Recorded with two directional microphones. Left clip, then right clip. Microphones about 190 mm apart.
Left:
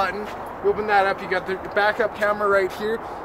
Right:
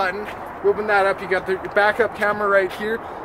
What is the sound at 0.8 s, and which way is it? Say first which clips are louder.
Speech: left 1 dB; 50° right (ahead or behind).